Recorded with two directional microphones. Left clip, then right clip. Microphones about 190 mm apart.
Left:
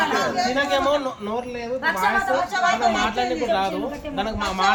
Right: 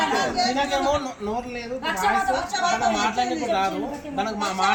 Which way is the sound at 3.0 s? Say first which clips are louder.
Left 1 dB; 20° left (ahead or behind).